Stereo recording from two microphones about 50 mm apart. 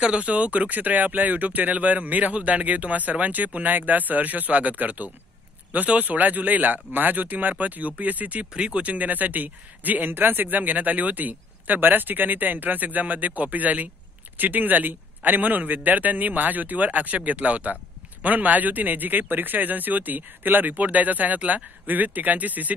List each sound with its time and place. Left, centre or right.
0.0 s speech: right